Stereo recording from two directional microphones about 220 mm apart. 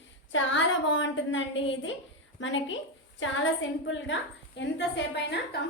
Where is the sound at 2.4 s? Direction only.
60° left (ahead or behind).